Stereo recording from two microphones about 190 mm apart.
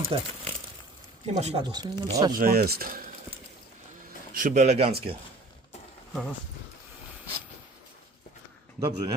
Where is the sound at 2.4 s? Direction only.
55° right (ahead or behind).